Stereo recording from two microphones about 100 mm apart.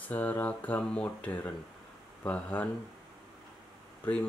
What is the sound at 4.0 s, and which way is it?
Speech, 15° left (ahead or behind).